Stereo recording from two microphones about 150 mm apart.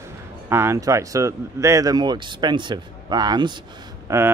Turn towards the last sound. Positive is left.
turn(degrees=-20)  # may be behind; listen again after turning